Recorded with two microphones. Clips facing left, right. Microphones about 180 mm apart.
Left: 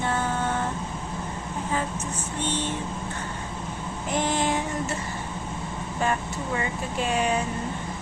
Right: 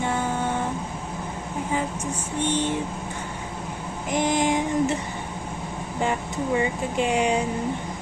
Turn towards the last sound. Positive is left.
turn(degrees=-15)  # may be behind; listen again after turning